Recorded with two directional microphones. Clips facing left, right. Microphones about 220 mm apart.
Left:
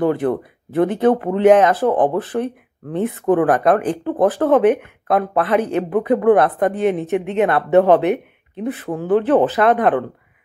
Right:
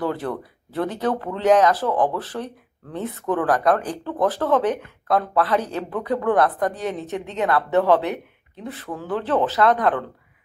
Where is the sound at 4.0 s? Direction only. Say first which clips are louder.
Left 6 dB; 50° left (ahead or behind).